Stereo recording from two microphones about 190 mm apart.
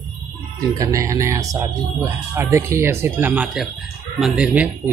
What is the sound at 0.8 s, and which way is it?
Speech, 15° right (ahead or behind).